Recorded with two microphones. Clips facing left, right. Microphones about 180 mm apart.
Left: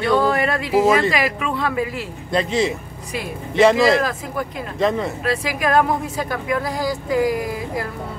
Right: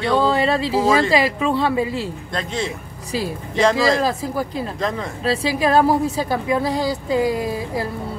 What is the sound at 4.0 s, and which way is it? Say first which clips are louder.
Speech: right 2 dB; 30° right (ahead or behind).